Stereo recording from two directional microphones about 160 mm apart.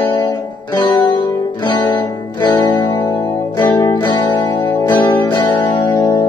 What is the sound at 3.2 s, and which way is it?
Music, 25° left (ahead or behind).